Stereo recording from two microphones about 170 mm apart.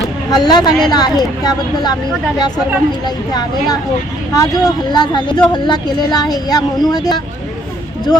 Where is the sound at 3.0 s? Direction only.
25° left (ahead or behind).